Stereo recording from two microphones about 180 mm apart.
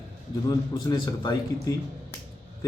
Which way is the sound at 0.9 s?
20° left (ahead or behind).